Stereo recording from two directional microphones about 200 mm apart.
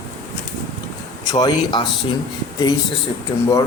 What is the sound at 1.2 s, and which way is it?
Speech, 20° left (ahead or behind).